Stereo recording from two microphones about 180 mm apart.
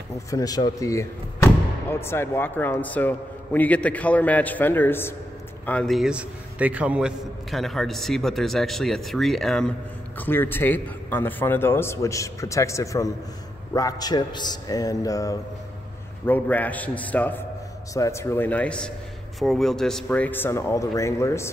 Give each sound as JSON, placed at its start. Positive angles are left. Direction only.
{"t": 0.3, "sound": "a man's voice", "side_deg": 20}